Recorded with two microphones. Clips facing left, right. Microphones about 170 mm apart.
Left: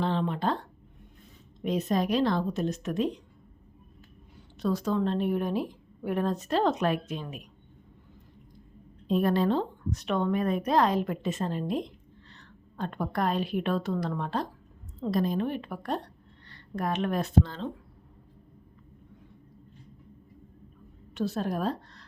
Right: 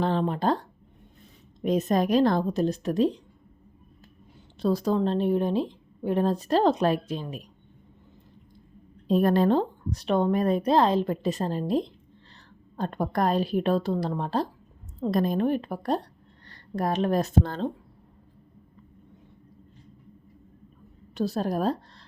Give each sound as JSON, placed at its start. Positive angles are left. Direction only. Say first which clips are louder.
{"t": 0.0, "sound": "a woman's voice", "louder": "right 3 dB", "side_deg": -45}
{"t": 1.6, "sound": "a woman's voice", "louder": "right 4 dB", "side_deg": -45}
{"t": 4.6, "sound": "a woman's voice", "louder": "right 3 dB", "side_deg": -35}
{"t": 9.0, "sound": "a woman's voice", "louder": "right 4 dB", "side_deg": -40}
{"t": 15.0, "sound": "a woman's voice", "louder": "right 4 dB", "side_deg": -50}
{"t": 21.2, "sound": "a woman's voice", "louder": "right 3 dB", "side_deg": -35}